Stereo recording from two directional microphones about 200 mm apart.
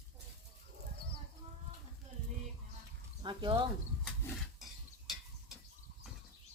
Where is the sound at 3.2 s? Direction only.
25° right (ahead or behind).